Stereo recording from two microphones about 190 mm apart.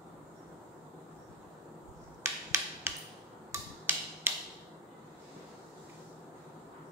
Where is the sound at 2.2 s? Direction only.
15° right (ahead or behind).